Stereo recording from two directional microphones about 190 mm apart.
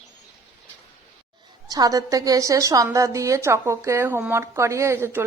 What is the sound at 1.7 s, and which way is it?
A woman's voice, 20° right (ahead or behind).